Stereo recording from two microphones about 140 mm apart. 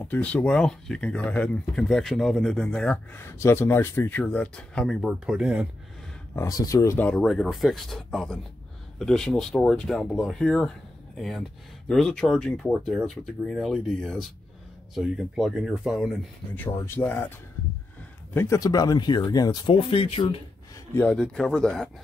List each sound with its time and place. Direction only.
0.0 s speech: 10° left (ahead or behind); by 5.7 s 5° right (ahead or behind)
6.3 s speech: 25° left (ahead or behind)
7.2 s speech: centre (ahead or behind)
16.6 s speech: 15° left (ahead or behind)
18.3 s speech: 20° left (ahead or behind); by 20.3 s 40° left (ahead or behind)
20.9 s speech: 10° left (ahead or behind)